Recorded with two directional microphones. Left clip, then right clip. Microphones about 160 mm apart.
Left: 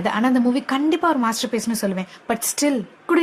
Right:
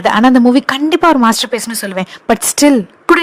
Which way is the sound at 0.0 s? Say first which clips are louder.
Right 11 dB; 55° right (ahead or behind).